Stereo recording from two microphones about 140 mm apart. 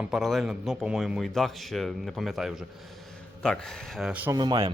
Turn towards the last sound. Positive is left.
turn(degrees=-30)  # may be behind; listen again after turning